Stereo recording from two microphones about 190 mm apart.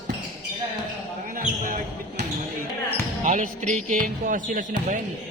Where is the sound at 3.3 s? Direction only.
40° right (ahead or behind).